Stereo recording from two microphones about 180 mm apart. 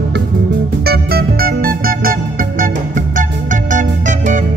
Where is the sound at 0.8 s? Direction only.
55° right (ahead or behind).